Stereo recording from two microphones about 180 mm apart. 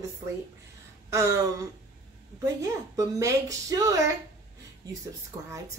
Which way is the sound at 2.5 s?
20° right (ahead or behind).